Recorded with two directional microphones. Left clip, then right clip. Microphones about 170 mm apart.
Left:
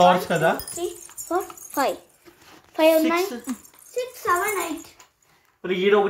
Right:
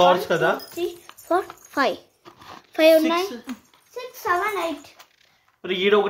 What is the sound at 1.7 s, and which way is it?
Speech, 45° right (ahead or behind).